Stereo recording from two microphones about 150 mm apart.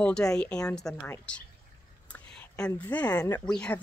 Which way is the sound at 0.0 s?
5° left (ahead or behind).